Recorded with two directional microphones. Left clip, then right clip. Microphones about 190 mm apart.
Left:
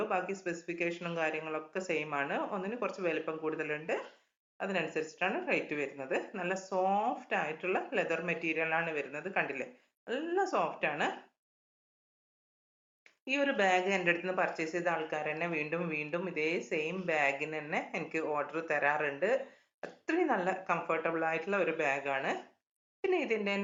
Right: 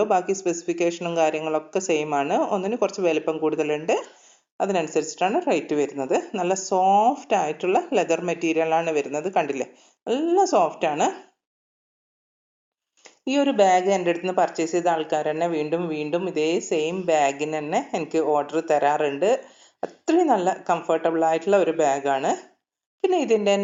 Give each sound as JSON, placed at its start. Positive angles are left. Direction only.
{"t": 0.0, "sound": "a woman's voice", "side_deg": -35}
{"t": 13.2, "sound": "speech", "side_deg": -30}